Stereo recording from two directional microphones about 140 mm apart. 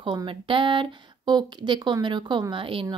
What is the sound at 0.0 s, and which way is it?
A woman's voice, 35° right (ahead or behind).